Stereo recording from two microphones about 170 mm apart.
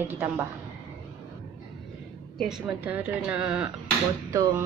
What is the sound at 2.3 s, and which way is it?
A woman's voice, centre (ahead or behind).